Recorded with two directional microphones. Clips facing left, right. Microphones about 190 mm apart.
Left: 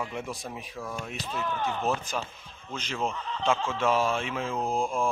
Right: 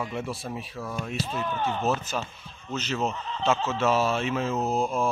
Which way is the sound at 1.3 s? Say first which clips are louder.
Left 1 dB; 20° right (ahead or behind).